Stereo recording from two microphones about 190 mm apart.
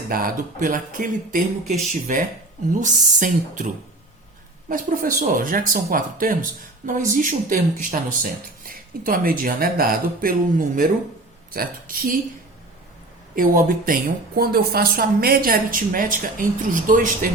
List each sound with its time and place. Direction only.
0.1 s speech: 50° right (ahead or behind)
4.7 s speech: 45° right (ahead or behind)
13.3 s speech: 45° right (ahead or behind)